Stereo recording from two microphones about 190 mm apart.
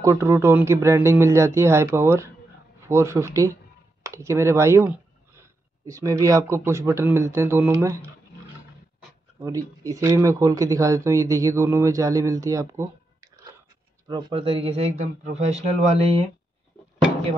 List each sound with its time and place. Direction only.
0.0 s speech: 15° right (ahead or behind)
9.4 s speech: 15° right (ahead or behind); by 16.3 s 35° right (ahead or behind)